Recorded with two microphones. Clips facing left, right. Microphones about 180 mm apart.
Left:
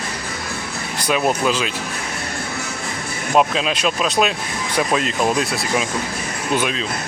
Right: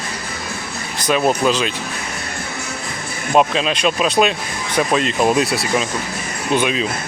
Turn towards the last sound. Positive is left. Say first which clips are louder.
# right 2 dB
turn(degrees=5)  # may be behind; listen again after turning